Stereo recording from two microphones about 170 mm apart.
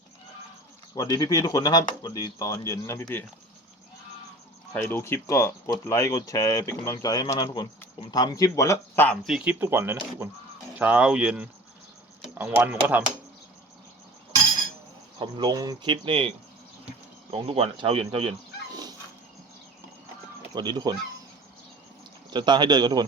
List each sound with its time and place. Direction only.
0.9 s speech: 20° left (ahead or behind)
4.7 s speech: 10° left (ahead or behind)
9.2 s speech: 5° right (ahead or behind)
15.2 s speech: 25° right (ahead or behind)
17.3 s speech: 35° right (ahead or behind)
20.6 s speech: 25° right (ahead or behind)
22.3 s speech: 25° right (ahead or behind)